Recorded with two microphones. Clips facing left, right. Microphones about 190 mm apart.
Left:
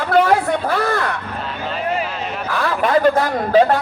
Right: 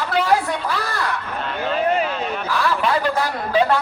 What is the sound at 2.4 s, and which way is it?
Speech, 50° left (ahead or behind).